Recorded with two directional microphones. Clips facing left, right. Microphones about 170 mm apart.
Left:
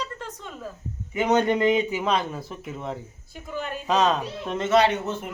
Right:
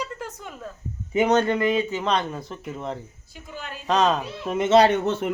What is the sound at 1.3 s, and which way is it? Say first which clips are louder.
A child's voice: left 3 dB; 15° left (ahead or behind).